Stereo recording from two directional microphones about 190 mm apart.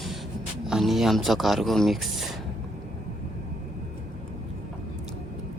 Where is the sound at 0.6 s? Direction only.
Centre (ahead or behind).